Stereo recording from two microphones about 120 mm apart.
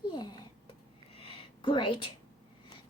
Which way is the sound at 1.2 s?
50° left (ahead or behind).